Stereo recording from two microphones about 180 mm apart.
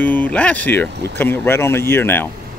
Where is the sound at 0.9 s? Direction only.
70° right (ahead or behind).